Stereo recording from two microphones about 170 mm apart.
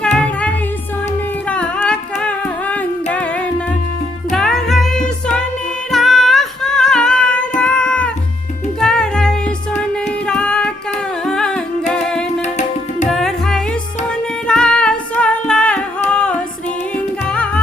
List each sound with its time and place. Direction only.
0.0 s music: 5° left (ahead or behind)
1.5 s humming: 5° left (ahead or behind)
4.3 s music: centre (ahead or behind)
12.4 s tabla: 45° left (ahead or behind)
13.1 s music: centre (ahead or behind)